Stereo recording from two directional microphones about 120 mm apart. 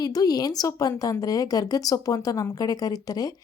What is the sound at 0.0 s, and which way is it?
A woman's voice, 35° left (ahead or behind).